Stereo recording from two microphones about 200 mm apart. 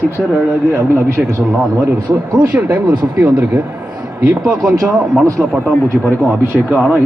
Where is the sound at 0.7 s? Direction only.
15° right (ahead or behind).